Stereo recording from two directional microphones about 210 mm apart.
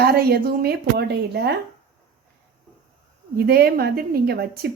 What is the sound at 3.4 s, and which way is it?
A woman's voice, 45° right (ahead or behind).